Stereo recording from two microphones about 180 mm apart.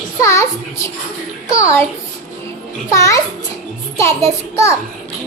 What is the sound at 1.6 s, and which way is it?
Speech, 15° left (ahead or behind).